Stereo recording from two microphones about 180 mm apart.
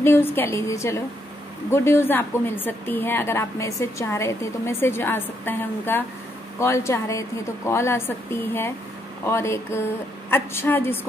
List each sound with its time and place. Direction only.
0.0 s a woman's voice: 10° left (ahead or behind)